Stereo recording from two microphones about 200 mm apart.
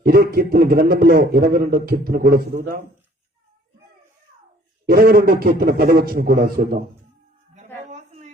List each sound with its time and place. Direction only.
0.0 s a man's voice: 45° right (ahead or behind)
4.9 s a man's voice: 50° right (ahead or behind)
7.9 s a sound: 35° right (ahead or behind)